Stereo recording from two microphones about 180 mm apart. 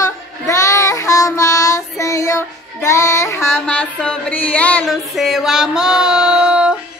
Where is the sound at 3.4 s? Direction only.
5° left (ahead or behind).